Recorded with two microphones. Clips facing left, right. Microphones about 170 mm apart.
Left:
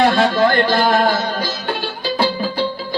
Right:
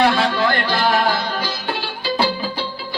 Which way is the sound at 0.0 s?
50° left (ahead or behind).